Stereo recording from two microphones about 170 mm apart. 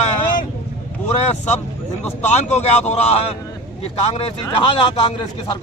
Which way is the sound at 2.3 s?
40° left (ahead or behind).